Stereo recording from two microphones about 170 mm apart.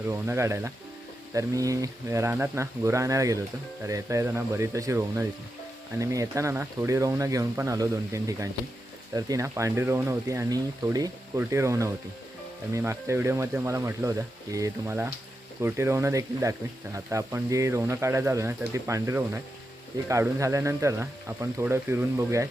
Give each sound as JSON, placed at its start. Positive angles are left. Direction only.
{"t": 0.1, "sound": "speech", "side_deg": -15}